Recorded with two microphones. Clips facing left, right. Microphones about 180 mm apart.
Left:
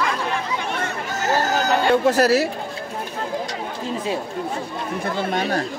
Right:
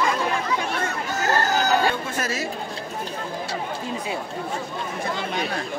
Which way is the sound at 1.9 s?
70° left (ahead or behind).